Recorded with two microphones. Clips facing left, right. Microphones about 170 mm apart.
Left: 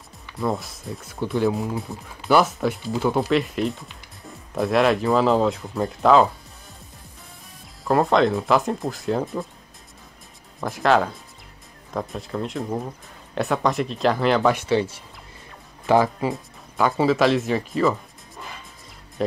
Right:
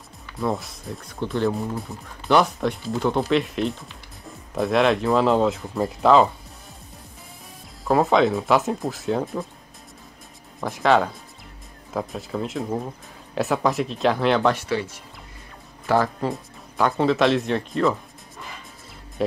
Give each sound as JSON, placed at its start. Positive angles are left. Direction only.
{"t": 0.4, "sound": "speech", "side_deg": 0}
{"t": 7.8, "sound": "speech", "side_deg": 0}
{"t": 10.6, "sound": "speech", "side_deg": 0}
{"t": 14.5, "sound": "speech", "side_deg": 25}
{"t": 15.9, "sound": "speech", "side_deg": 15}
{"t": 16.3, "sound": "speech", "side_deg": 0}